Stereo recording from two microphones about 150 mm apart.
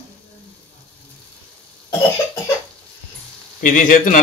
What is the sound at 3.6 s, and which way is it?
Speech, 60° left (ahead or behind).